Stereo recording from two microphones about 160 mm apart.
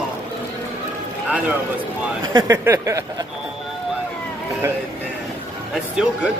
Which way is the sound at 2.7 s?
20° right (ahead or behind).